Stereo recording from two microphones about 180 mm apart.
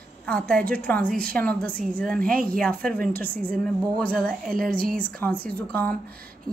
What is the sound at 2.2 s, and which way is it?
Speech, 50° right (ahead or behind).